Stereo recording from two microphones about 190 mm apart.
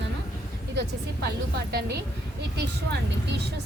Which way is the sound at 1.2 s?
55° right (ahead or behind).